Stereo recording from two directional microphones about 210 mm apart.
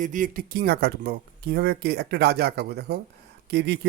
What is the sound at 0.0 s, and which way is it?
Speech, 40° right (ahead or behind).